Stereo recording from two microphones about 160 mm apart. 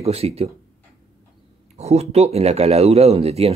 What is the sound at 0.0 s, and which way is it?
Speech, 40° right (ahead or behind).